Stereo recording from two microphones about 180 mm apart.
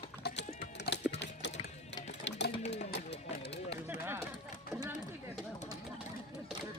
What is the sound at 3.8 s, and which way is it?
Run, 10° right (ahead or behind).